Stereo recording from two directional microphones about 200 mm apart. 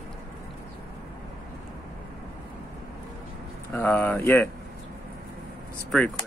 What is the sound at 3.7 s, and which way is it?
Speech, 10° left (ahead or behind).